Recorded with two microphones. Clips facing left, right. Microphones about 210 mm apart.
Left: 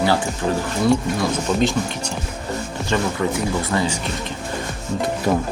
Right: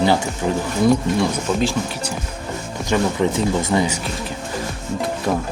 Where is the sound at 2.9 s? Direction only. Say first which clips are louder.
Right 3 dB; 20° right (ahead or behind).